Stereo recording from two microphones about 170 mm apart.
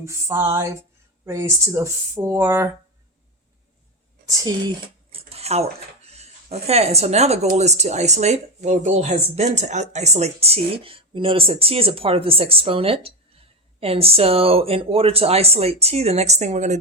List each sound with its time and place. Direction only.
0.0 s speech: 15° right (ahead or behind)
4.3 s speech: 25° right (ahead or behind)
5.1 s a sound: 35° right (ahead or behind)
7.5 s speech: 40° right (ahead or behind)